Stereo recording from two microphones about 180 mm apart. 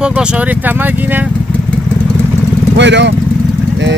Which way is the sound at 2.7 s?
75° right (ahead or behind).